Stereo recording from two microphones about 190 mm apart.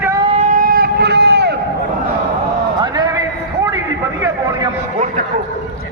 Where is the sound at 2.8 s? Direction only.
20° right (ahead or behind).